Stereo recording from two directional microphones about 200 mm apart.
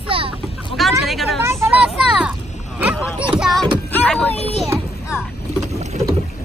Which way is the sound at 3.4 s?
Centre (ahead or behind).